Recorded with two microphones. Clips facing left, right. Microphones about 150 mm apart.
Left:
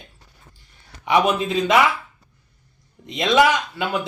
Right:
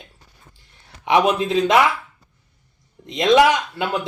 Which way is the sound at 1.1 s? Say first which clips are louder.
Right 2 dB; centre (ahead or behind).